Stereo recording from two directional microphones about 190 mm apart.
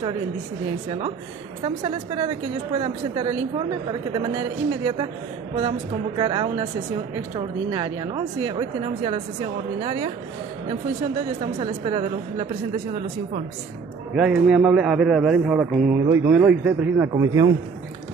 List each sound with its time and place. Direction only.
1.6 s speech: 25° right (ahead or behind)
5.6 s speech: 25° right (ahead or behind)
11.6 s speech: 25° right (ahead or behind)
14.1 s a man's voice: 5° right (ahead or behind)
17.1 s speech: 20° right (ahead or behind)